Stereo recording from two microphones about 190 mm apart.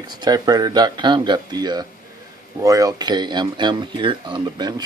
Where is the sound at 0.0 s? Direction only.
20° right (ahead or behind).